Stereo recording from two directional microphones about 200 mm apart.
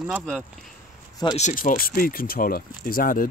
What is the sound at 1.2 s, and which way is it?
Speech, 35° left (ahead or behind).